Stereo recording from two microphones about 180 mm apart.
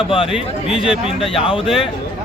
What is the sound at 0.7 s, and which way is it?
Speech, 5° right (ahead or behind).